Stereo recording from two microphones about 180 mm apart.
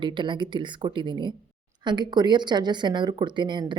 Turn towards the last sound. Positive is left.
turn(degrees=-25)  # may be behind; listen again after turning